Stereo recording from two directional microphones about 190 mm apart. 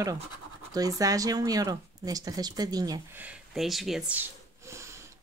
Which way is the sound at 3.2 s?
5° right (ahead or behind).